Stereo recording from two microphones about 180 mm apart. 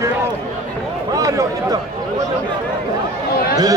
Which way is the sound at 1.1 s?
20° right (ahead or behind).